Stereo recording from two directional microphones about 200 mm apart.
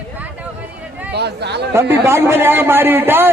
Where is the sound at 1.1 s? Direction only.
55° right (ahead or behind).